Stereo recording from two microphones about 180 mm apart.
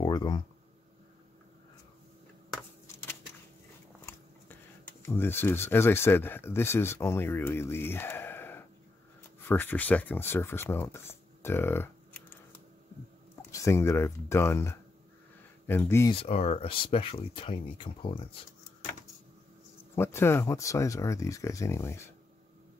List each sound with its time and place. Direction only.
0.0 s a sound: 25° left (ahead or behind)
5.0 s speech: 10° left (ahead or behind)
13.5 s speech: 15° left (ahead or behind)
16.1 s speech: 35° left (ahead or behind)
20.0 s speech: 15° left (ahead or behind)